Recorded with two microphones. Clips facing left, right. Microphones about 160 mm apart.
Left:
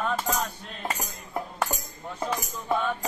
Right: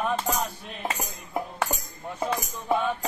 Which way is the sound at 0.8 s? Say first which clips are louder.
Right 1 dB; 10° right (ahead or behind).